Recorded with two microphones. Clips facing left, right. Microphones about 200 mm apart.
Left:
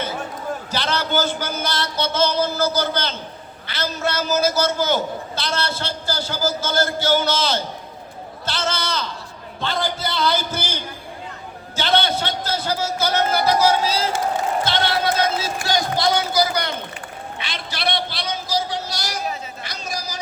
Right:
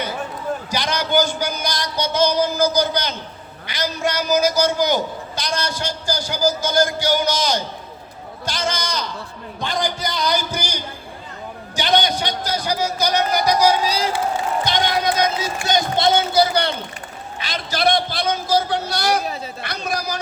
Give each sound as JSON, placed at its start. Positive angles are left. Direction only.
{"t": 0.7, "sound": "a man's voice", "side_deg": -15}
{"t": 17.4, "sound": "a man's voice", "side_deg": -40}